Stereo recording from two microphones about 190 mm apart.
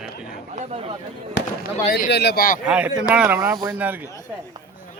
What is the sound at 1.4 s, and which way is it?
Speech, 65° left (ahead or behind).